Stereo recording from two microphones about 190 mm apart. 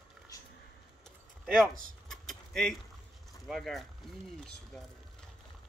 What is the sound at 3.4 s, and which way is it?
Speech, centre (ahead or behind).